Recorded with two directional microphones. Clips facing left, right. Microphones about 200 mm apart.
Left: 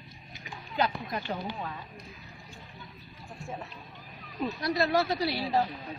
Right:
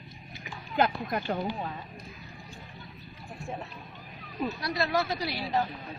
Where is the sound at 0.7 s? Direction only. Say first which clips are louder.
Right 3 dB; 55° right (ahead or behind).